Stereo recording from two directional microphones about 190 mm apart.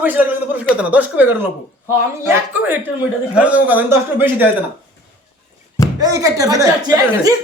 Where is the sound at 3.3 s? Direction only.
5° right (ahead or behind).